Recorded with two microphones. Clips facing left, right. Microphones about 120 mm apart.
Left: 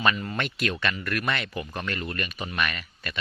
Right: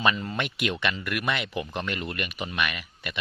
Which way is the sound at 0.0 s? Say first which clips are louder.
Even; 20° right (ahead or behind).